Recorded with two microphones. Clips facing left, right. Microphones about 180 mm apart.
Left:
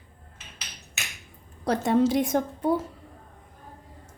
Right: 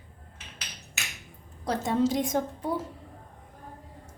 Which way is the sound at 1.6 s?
65° left (ahead or behind).